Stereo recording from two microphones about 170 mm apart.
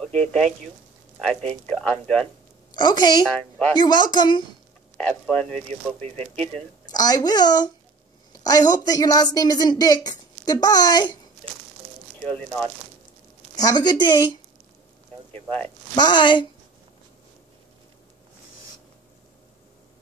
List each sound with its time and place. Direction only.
0.0 s speech: 5° left (ahead or behind)
1.7 s speech: 5° left (ahead or behind)
2.7 s speech: 25° left (ahead or behind)
3.3 s speech: 5° left (ahead or behind)
3.7 s speech: 25° left (ahead or behind)
4.9 s speech: 5° left (ahead or behind)
6.9 s speech: 20° left (ahead or behind)
12.3 s speech: 5° left (ahead or behind)
13.6 s speech: 25° left (ahead or behind)
15.9 s speech: 25° left (ahead or behind)